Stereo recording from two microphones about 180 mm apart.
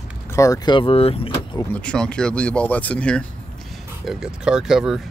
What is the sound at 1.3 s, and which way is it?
Speech, 15° left (ahead or behind).